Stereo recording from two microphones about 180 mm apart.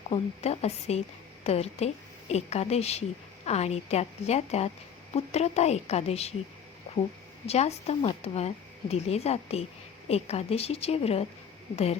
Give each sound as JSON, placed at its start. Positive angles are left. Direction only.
{"t": 0.1, "sound": "speech", "side_deg": 35}
{"t": 7.4, "sound": "speech", "side_deg": 35}